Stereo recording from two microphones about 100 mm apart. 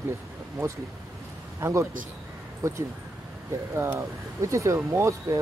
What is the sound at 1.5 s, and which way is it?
Speech, 30° right (ahead or behind).